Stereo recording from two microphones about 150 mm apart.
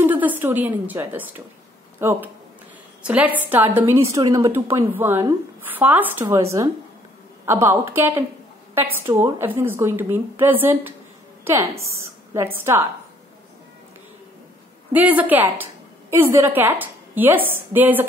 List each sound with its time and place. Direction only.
0.0 s a woman's voice: 10° right (ahead or behind)
11.8 s a sound: 20° right (ahead or behind)
12.5 s a woman's voice: 15° right (ahead or behind)
14.9 s a woman's voice: 10° right (ahead or behind)